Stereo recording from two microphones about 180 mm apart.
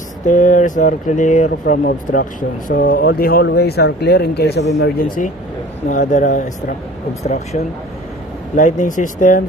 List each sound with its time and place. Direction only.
0.3 s speech: 45° left (ahead or behind)
2.7 s speech: 55° left (ahead or behind)
5.9 s speech: 45° left (ahead or behind)